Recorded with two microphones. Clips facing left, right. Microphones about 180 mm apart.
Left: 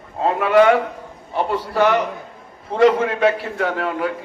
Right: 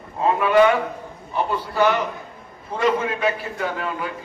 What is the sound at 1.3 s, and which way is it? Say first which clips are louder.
A man's voice: left 2 dB; 85° left.